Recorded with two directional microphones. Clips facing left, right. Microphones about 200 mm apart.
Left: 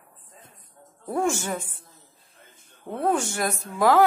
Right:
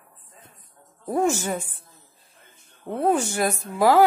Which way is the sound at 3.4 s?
30° right (ahead or behind).